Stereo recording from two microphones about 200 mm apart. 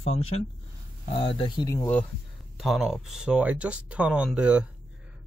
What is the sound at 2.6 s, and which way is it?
Speech, centre (ahead or behind).